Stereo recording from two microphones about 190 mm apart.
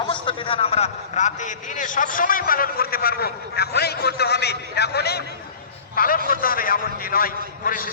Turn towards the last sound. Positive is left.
turn(degrees=50)  # may be behind; listen again after turning